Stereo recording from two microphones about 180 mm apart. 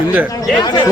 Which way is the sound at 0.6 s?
25° left (ahead or behind).